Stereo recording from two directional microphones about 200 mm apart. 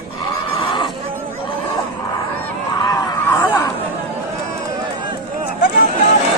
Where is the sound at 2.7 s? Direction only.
20° left (ahead or behind).